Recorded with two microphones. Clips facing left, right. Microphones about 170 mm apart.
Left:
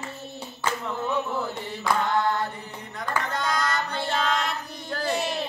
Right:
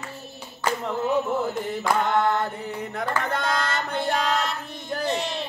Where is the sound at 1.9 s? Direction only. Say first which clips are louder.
Right 2 dB; 20° right (ahead or behind).